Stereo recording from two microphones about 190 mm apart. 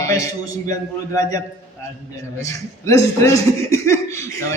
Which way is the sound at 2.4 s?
15° left (ahead or behind).